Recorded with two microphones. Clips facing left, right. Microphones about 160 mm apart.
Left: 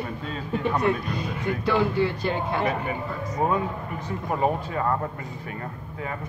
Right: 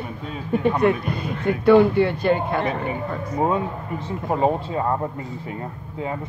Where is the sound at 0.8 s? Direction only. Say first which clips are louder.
Right 5 dB; 60° right (ahead or behind).